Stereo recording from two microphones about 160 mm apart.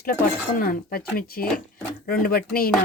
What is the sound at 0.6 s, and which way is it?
Speech, 70° left (ahead or behind).